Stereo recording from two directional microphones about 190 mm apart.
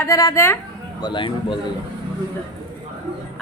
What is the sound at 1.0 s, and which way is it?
Speech, 25° left (ahead or behind).